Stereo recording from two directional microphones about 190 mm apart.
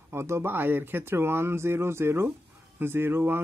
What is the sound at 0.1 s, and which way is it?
Speech, 15° right (ahead or behind).